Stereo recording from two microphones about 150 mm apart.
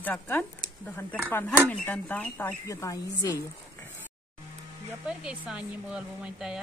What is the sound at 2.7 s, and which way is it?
Speech, 25° left (ahead or behind).